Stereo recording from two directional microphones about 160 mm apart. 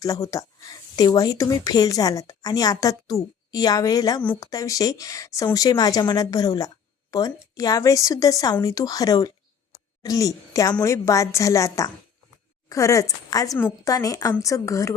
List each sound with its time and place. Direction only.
0.0 s speech: 20° left (ahead or behind)